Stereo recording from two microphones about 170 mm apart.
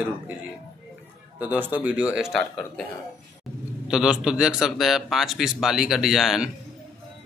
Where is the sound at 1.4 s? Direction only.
10° right (ahead or behind).